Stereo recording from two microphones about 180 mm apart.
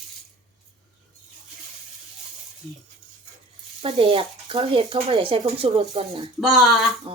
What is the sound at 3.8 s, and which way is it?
Speech, 30° right (ahead or behind).